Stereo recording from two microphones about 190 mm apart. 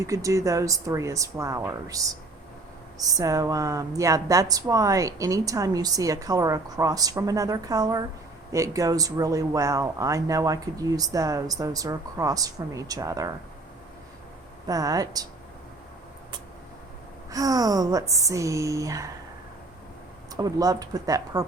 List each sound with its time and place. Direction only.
0.0 s a woman's voice: 15° right (ahead or behind)
14.7 s speech: 20° right (ahead or behind)
17.3 s a woman's voice: 20° right (ahead or behind)
20.3 s speech: 20° right (ahead or behind)